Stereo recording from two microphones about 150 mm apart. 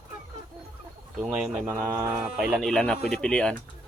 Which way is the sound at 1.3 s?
Centre (ahead or behind).